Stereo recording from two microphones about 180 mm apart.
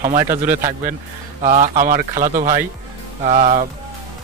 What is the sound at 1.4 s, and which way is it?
Speech, 45° right (ahead or behind).